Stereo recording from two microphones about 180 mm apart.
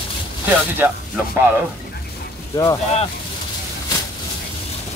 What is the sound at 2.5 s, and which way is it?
Speech, 20° left (ahead or behind).